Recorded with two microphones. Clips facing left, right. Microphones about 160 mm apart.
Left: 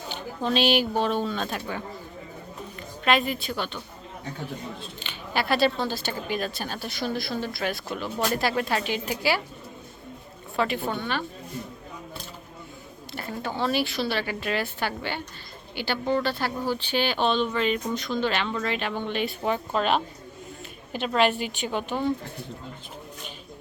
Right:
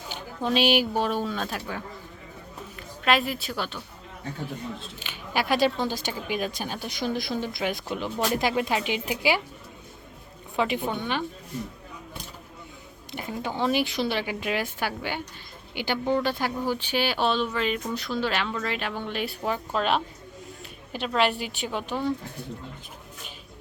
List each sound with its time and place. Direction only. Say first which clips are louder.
0.1 s speech: even; 10° right (ahead or behind)
3.0 s a woman's voice: left 1 dB; centre (ahead or behind)
4.9 s speech: even; 10° right (ahead or behind)
10.6 s speech: even; 15° right (ahead or behind)
13.1 s a woman's voice: right 1 dB; 15° right (ahead or behind)